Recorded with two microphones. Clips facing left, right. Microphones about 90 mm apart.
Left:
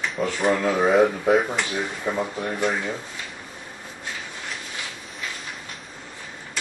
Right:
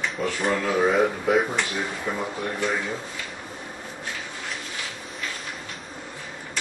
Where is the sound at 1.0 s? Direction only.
Centre (ahead or behind).